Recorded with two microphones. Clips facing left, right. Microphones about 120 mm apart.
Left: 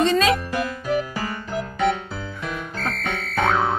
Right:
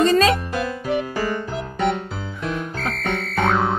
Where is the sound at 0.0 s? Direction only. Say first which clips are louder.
Right 2 dB; 40° right (ahead or behind).